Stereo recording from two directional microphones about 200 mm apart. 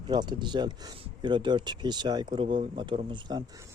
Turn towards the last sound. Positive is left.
turn(degrees=-25)  # may be behind; listen again after turning